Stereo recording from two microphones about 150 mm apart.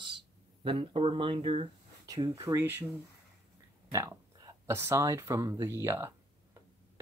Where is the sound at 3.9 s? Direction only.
20° right (ahead or behind).